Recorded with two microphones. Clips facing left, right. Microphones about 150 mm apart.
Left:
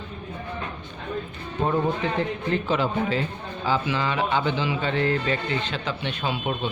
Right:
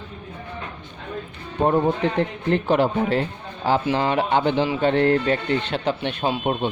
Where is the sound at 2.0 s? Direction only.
60° right (ahead or behind).